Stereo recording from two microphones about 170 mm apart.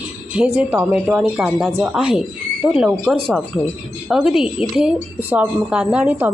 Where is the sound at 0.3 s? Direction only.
5° right (ahead or behind).